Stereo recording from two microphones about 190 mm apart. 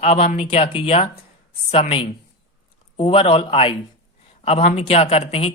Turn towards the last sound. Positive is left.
turn(degrees=30)  # may be behind; listen again after turning